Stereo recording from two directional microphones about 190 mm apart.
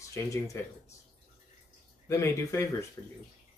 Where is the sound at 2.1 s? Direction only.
15° left (ahead or behind).